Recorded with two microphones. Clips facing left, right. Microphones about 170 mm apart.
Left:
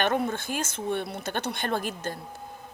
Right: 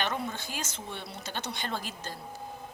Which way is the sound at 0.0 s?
55° left (ahead or behind).